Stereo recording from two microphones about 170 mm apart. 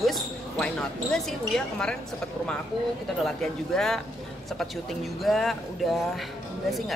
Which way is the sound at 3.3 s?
Centre (ahead or behind).